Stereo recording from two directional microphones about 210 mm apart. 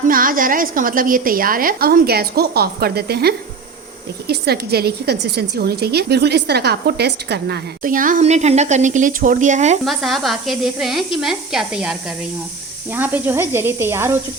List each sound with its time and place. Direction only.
0.1 s a woman's voice: 40° right (ahead or behind)
9.8 s speech: centre (ahead or behind)